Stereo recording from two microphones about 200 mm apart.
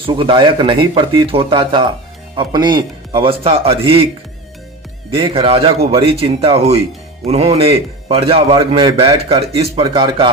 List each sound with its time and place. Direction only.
0.0 s a man's voice: 25° right (ahead or behind)
5.1 s a man's voice: 25° right (ahead or behind)